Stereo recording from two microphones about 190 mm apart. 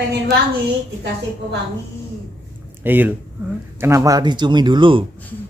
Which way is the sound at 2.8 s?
10° right (ahead or behind).